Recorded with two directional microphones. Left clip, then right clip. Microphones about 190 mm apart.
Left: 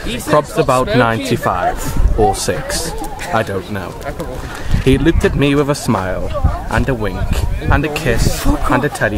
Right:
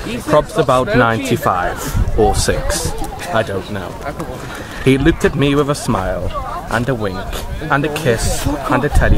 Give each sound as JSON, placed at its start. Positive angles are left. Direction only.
{"t": 0.1, "sound": "speech", "side_deg": 10}
{"t": 3.3, "sound": "speech", "side_deg": 15}
{"t": 4.8, "sound": "speech", "side_deg": -5}
{"t": 5.4, "sound": "speech", "side_deg": 10}
{"t": 6.7, "sound": "speech", "side_deg": 5}
{"t": 8.6, "sound": "speech", "side_deg": 10}